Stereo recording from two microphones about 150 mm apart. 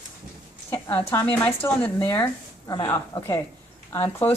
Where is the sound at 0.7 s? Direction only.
15° left (ahead or behind).